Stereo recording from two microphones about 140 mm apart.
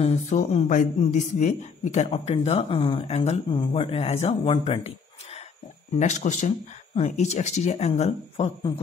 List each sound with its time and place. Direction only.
0.0 s a man's voice: 55° left (ahead or behind)
5.9 s speech: 55° left (ahead or behind)